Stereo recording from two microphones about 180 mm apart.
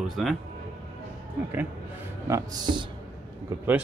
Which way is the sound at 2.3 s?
20° right (ahead or behind).